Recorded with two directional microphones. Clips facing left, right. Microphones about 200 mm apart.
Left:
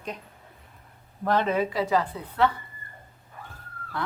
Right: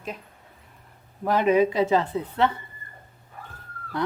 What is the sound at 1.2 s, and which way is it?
A woman's voice, 10° right (ahead or behind).